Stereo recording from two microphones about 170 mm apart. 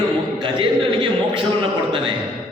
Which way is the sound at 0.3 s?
30° right (ahead or behind).